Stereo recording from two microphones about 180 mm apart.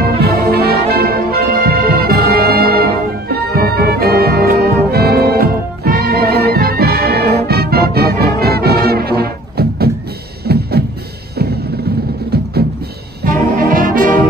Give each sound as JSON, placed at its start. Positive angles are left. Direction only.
{"t": 0.0, "sound": "music", "side_deg": -60}
{"t": 13.2, "sound": "brass instrument", "side_deg": -50}